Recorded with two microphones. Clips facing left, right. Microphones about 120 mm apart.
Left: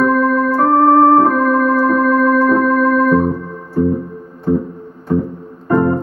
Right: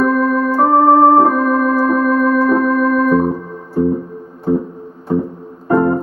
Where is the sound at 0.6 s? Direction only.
15° right (ahead or behind).